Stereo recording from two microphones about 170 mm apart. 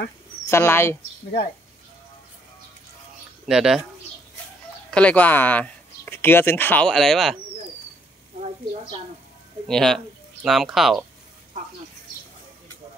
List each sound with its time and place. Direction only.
0.5 s speech: 15° left (ahead or behind)
3.4 s speech: 5° right (ahead or behind)
4.9 s speech: 10° left (ahead or behind)
9.7 s speech: centre (ahead or behind)